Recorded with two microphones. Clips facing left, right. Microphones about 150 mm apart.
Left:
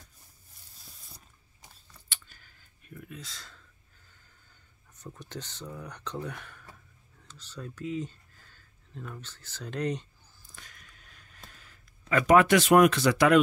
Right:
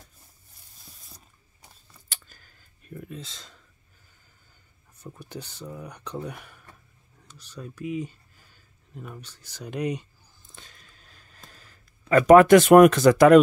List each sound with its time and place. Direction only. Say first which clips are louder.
2.0 s clicking: right 2 dB; 40° right (ahead or behind); by 3.6 s 20° right (ahead or behind)
4.9 s speech: right 2 dB; 10° right (ahead or behind)
10.4 s a sound: right 2 dB; 25° right (ahead or behind)
12.1 s speech: right 8 dB; 45° right (ahead or behind)